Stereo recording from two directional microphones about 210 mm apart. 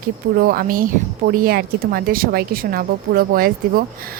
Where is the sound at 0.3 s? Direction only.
45° right (ahead or behind).